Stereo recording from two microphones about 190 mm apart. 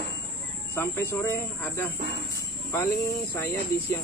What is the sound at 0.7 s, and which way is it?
Speech, 10° left (ahead or behind).